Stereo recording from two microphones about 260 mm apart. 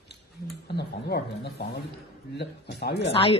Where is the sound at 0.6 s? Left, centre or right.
Left.